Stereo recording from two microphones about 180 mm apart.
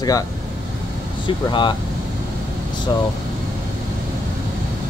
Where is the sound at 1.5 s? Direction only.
25° left (ahead or behind).